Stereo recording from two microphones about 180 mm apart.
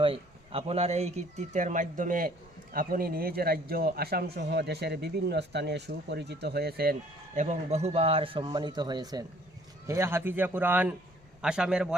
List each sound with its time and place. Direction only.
0.0 s a man's voice: 30° right (ahead or behind); by 6.9 s 60° right (ahead or behind)
7.3 s a man's voice: 40° right (ahead or behind); by 11.9 s 5° right (ahead or behind)